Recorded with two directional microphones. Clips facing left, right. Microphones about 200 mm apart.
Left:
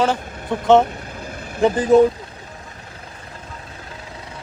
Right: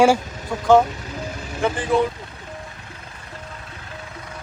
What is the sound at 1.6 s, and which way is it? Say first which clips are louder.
Speech: left 7 dB; 40° left (ahead or behind).